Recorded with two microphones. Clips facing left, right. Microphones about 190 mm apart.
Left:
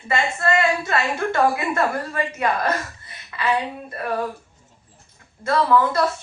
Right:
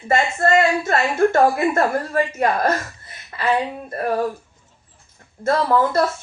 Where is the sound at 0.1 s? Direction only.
45° right (ahead or behind).